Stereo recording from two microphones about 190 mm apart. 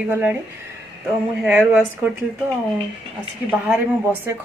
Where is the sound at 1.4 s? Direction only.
10° right (ahead or behind).